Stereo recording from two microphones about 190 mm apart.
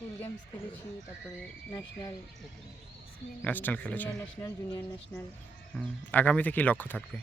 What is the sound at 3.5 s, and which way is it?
Speech, 10° left (ahead or behind).